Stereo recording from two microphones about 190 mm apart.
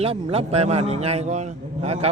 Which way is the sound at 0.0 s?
30° right (ahead or behind).